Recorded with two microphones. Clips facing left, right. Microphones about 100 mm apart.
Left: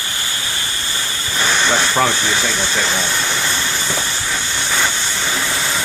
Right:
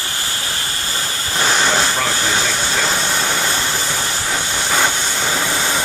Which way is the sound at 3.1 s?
40° right (ahead or behind).